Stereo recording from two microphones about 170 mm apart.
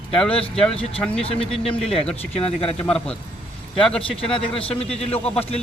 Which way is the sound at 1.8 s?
5° left (ahead or behind).